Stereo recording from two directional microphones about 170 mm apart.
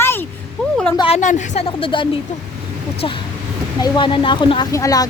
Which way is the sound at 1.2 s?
45° left (ahead or behind).